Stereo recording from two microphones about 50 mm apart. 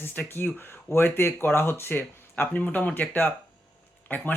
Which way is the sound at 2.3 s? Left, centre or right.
Left.